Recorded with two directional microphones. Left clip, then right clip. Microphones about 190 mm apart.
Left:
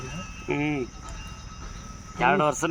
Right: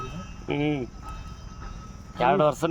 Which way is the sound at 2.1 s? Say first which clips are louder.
Right 1 dB; 60° right (ahead or behind).